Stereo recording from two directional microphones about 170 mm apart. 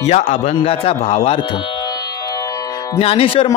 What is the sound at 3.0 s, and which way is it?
Mantra, 35° left (ahead or behind).